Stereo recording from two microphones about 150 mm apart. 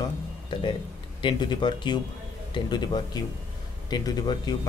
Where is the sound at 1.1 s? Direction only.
30° left (ahead or behind).